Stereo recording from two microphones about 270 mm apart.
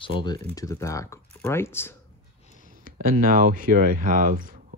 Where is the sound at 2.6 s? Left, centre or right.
Right.